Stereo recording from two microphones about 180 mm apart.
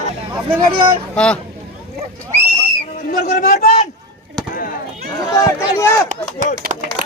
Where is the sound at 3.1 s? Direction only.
50° left (ahead or behind).